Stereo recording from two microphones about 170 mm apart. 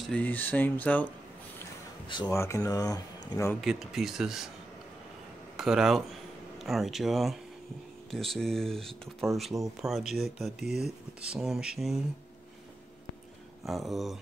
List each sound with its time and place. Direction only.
0.1 s speech: 10° left (ahead or behind)
2.0 s speech: 30° left (ahead or behind)
2.3 s speech: 15° left (ahead or behind)
3.6 s speech: centre (ahead or behind)
5.6 s speech: centre (ahead or behind)
13.7 s speech: centre (ahead or behind)